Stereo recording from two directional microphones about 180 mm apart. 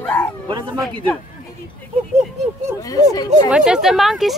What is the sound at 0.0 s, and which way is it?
Bow-wow, 10° left (ahead or behind).